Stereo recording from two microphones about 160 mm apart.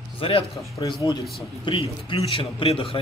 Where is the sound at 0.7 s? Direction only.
25° left (ahead or behind).